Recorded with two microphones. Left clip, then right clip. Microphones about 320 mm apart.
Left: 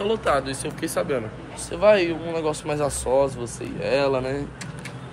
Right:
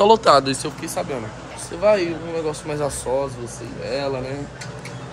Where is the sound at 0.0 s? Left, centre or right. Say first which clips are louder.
Right 9 dB; centre.